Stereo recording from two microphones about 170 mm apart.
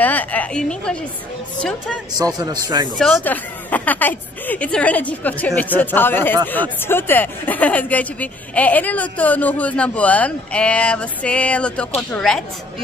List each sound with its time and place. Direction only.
0.0 s speech: 10° left (ahead or behind)
2.1 s a man's voice: 20° right (ahead or behind)
3.0 s speech: 5° left (ahead or behind)